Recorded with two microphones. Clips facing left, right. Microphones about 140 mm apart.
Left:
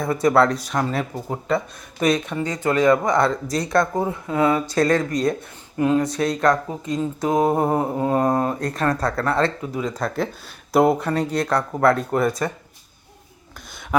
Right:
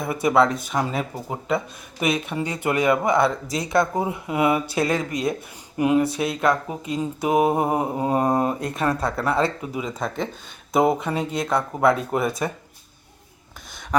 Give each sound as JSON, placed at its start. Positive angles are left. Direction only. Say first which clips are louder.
{"t": 0.0, "sound": "speech", "louder": "left 2 dB", "side_deg": -5}